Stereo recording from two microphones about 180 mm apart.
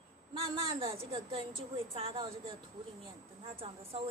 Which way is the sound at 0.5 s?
30° right (ahead or behind).